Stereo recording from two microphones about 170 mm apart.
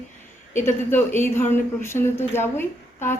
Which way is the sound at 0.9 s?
15° left (ahead or behind).